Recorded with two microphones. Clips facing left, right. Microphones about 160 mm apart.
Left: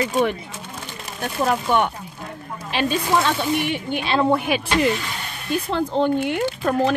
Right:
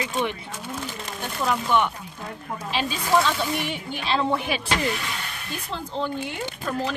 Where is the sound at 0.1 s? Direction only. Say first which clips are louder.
Left 6 dB; 45° left (ahead or behind).